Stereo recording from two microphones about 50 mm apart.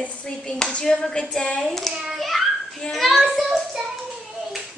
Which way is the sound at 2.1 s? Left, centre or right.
Centre.